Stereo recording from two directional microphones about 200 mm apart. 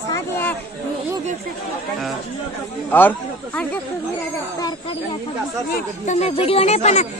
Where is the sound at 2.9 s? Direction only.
10° left (ahead or behind).